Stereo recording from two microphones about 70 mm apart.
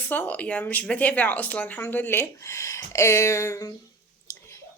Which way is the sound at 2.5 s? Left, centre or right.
Left.